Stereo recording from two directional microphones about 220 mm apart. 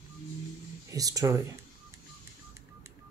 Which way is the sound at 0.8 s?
15° right (ahead or behind).